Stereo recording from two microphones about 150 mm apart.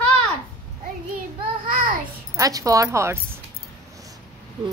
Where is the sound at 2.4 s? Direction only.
25° right (ahead or behind).